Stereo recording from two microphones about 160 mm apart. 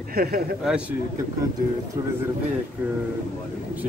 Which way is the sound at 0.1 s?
65° right (ahead or behind).